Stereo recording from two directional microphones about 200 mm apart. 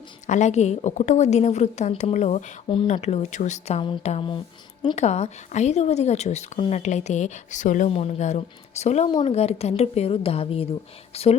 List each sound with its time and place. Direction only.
0.3 s a woman's voice: 35° left (ahead or behind)